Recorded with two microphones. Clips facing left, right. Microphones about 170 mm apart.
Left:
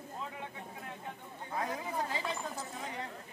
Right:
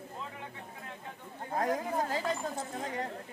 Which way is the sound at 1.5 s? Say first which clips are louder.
Right 5 dB; 45° right (ahead or behind).